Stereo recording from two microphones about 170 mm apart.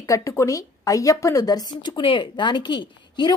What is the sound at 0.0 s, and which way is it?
A woman's voice, 20° left (ahead or behind).